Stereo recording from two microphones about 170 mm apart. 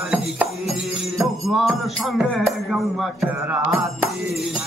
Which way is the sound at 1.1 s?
20° right (ahead or behind).